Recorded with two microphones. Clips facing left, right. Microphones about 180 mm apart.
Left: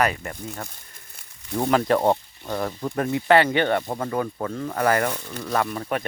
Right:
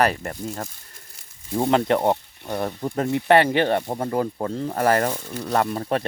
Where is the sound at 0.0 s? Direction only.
40° right (ahead or behind).